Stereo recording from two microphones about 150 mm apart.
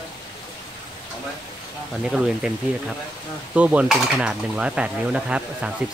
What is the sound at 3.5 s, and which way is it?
Cutlery, 10° right (ahead or behind).